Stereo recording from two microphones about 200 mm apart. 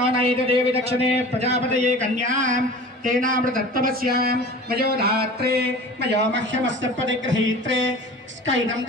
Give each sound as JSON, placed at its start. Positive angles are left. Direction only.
{"t": 0.2, "sound": "a man's voice", "side_deg": -30}